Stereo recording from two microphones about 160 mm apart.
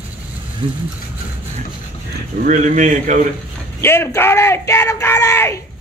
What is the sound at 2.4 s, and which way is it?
Speech, 50° right (ahead or behind).